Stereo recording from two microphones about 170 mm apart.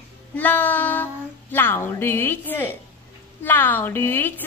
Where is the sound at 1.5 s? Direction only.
15° left (ahead or behind).